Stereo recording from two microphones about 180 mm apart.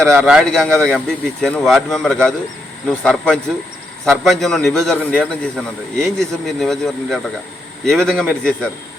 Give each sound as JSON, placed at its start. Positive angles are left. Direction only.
{"t": 0.1, "sound": "a man's voice", "side_deg": 0}